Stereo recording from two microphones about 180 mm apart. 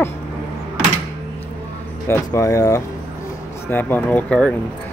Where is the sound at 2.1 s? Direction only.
15° left (ahead or behind).